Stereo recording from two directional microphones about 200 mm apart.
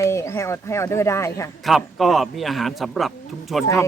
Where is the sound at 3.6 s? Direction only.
15° left (ahead or behind).